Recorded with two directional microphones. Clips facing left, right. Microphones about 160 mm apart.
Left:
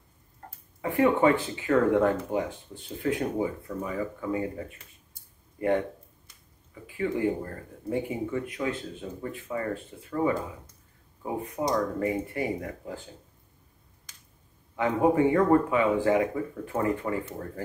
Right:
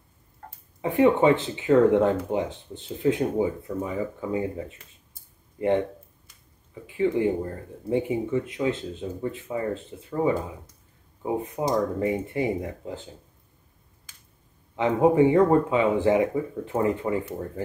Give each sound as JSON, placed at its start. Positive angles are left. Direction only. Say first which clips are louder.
{"t": 0.7, "sound": "speech", "louder": "right 3 dB", "side_deg": -20}
{"t": 11.2, "sound": "speech", "louder": "right 3 dB", "side_deg": -20}
{"t": 14.8, "sound": "speech", "louder": "right 4 dB", "side_deg": -20}